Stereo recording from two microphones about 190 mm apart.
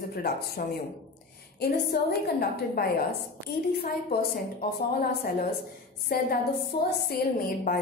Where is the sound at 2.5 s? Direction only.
55° left (ahead or behind).